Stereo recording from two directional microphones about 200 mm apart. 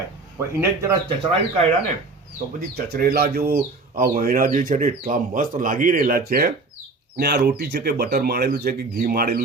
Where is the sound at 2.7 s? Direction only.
50° right (ahead or behind).